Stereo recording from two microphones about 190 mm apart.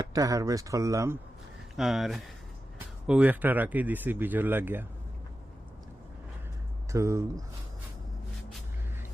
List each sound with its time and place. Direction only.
0.1 s speech: 20° right (ahead or behind)
1.7 s speech: centre (ahead or behind)
6.9 s speech: 15° right (ahead or behind)